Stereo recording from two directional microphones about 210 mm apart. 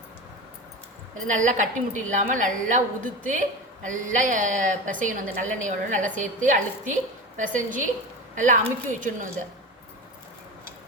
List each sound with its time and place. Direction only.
1.4 s a woman's voice: 35° right (ahead or behind)